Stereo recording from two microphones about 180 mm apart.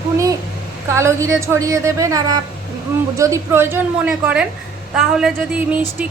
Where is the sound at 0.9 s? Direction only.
15° right (ahead or behind).